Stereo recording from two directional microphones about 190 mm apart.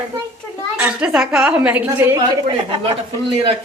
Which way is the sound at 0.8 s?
10° right (ahead or behind).